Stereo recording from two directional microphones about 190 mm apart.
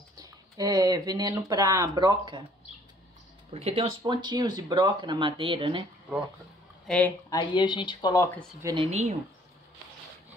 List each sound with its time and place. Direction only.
0.2 s speech: 20° right (ahead or behind)
3.5 s speech: 35° right (ahead or behind)
6.9 s speech: 10° left (ahead or behind)
7.2 s speech: 25° left (ahead or behind)
8.6 s speech: 25° right (ahead or behind)